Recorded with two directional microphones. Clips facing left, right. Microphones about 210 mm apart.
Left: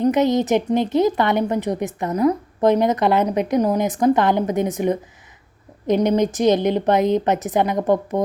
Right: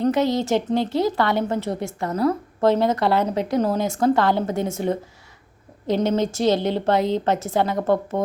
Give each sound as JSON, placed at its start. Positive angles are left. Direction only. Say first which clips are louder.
{"t": 0.0, "sound": "a woman's voice", "louder": "left 3 dB", "side_deg": 20}